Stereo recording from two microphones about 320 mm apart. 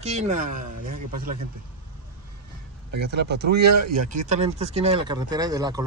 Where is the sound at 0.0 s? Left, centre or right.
Right.